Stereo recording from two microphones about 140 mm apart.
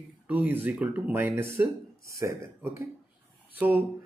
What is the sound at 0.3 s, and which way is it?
Speech, 10° right (ahead or behind).